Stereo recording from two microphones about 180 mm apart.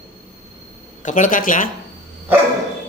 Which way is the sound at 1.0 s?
45° left (ahead or behind).